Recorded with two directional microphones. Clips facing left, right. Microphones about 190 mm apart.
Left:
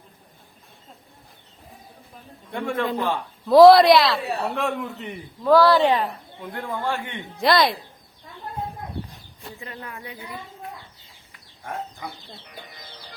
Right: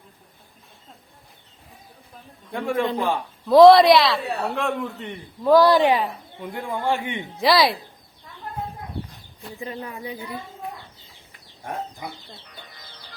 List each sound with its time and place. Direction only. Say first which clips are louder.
2.5 s a man's voice: right 2 dB; 5° right (ahead or behind)
5.4 s a woman's voice: right 1 dB; 15° right (ahead or behind)
6.0 s a woman's voice: right 1 dB; centre (ahead or behind)
7.4 s a man's voice: right 1 dB; 5° right (ahead or behind)
9.6 s a woman's voice: right 6 dB; 15° right (ahead or behind)